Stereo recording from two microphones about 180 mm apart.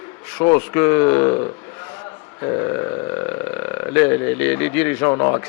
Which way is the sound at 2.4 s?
20° left (ahead or behind).